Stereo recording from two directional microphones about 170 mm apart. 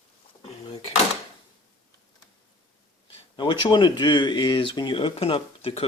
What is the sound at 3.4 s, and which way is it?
Speech, 25° left (ahead or behind).